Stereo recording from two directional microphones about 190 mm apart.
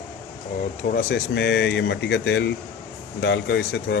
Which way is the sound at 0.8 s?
45° left (ahead or behind).